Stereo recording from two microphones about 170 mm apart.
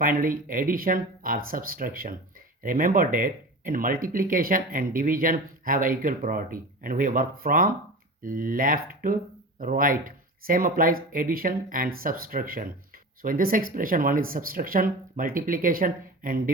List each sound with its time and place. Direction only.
0.0 s speech: 55° right (ahead or behind)